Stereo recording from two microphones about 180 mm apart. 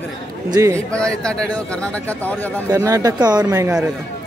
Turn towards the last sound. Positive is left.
turn(degrees=-15)  # may be behind; listen again after turning